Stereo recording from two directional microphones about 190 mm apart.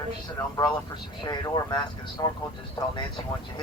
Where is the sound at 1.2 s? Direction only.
25° left (ahead or behind).